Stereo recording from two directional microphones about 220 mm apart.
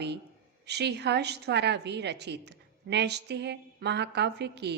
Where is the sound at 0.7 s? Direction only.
50° right (ahead or behind).